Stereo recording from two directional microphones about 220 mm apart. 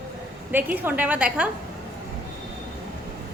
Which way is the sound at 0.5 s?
10° right (ahead or behind).